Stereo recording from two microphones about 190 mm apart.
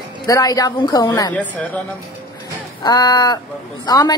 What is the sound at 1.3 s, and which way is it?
Speech, 5° left (ahead or behind).